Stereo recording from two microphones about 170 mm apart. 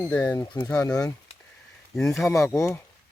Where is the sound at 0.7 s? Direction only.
5° left (ahead or behind).